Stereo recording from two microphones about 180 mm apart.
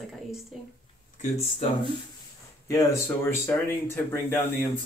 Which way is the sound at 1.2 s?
35° left (ahead or behind).